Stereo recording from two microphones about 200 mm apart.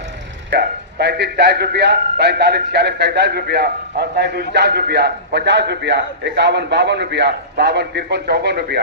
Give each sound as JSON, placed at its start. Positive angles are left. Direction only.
{"t": 0.5, "sound": "a man's voice", "side_deg": -55}